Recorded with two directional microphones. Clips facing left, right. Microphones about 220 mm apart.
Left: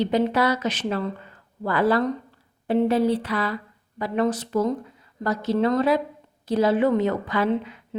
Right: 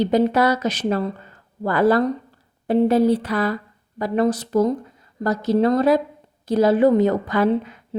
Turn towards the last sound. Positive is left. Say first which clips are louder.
# right 4 dB
turn(degrees=-45)  # may be behind; listen again after turning